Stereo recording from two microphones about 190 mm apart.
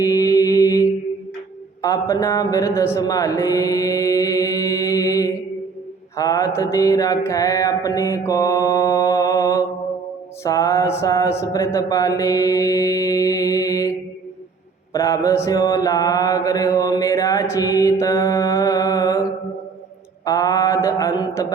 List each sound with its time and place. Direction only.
0.0 s mantra: 20° left (ahead or behind)
1.8 s speech: 20° left (ahead or behind)
6.1 s mantra: 20° left (ahead or behind)
14.9 s mantra: 15° left (ahead or behind)
20.2 s mantra: 20° left (ahead or behind)